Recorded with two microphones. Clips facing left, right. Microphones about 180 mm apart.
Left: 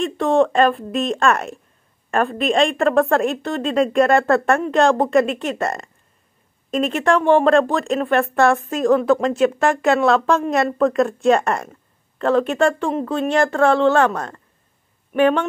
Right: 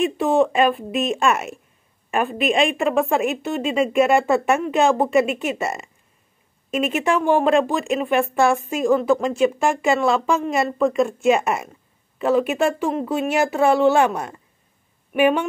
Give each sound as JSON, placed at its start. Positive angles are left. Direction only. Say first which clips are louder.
{"t": 0.0, "sound": "speech", "louder": "left 1 dB", "side_deg": -5}